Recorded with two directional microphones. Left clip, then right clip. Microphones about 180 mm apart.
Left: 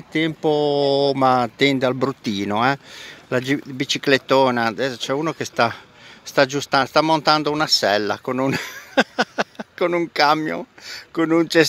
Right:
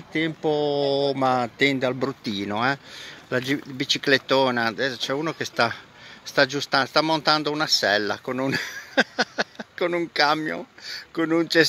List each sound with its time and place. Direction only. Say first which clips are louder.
0.1 s speech: left 4 dB; 60° left (ahead or behind)